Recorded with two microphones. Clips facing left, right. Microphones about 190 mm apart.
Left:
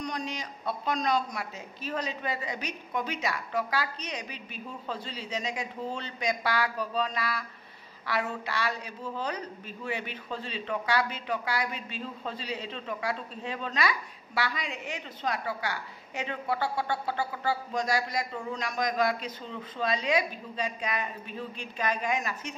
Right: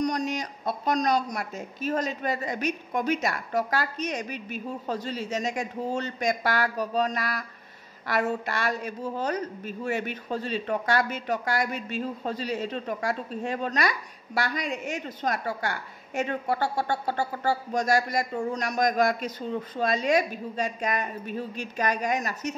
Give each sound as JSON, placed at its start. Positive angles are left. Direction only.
{"t": 0.0, "sound": "a woman's voice", "side_deg": -45}